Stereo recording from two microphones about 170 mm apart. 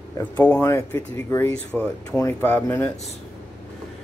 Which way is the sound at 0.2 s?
10° left (ahead or behind).